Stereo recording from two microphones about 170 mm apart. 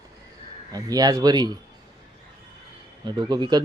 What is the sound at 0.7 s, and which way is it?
Speech, 20° right (ahead or behind).